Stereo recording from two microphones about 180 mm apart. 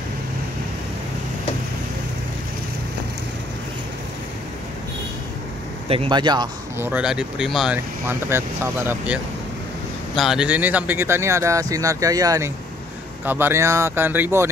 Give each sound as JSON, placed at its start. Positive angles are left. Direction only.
{"t": 5.9, "sound": "speech", "side_deg": -30}
{"t": 6.8, "sound": "speech", "side_deg": -5}